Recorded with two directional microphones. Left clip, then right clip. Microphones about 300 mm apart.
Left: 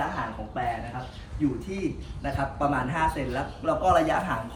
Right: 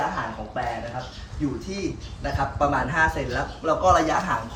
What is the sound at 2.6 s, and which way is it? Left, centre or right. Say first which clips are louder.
Speech: right 5 dB; centre.